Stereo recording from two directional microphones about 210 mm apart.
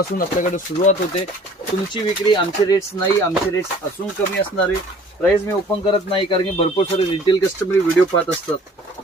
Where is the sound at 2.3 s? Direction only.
20° left (ahead or behind).